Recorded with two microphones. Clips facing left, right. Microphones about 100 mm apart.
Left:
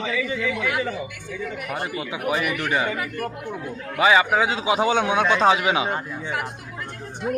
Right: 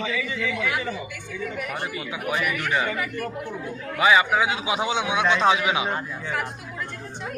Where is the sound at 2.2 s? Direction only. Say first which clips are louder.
Left 2 dB; 35° left (ahead or behind).